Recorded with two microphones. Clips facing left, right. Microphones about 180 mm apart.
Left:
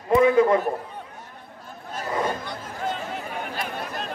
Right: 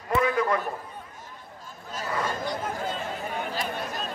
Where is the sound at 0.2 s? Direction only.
25° left (ahead or behind).